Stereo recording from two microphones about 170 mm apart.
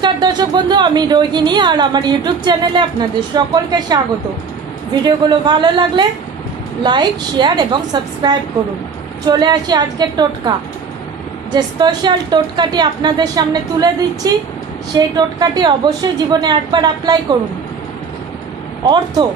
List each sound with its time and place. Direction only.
0.0 s a woman's voice: 25° right (ahead or behind)
5.0 s a woman's voice: 25° right (ahead or behind)
11.5 s a woman's voice: 25° right (ahead or behind)